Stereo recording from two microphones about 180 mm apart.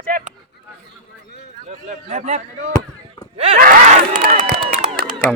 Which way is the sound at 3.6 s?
50° right (ahead or behind).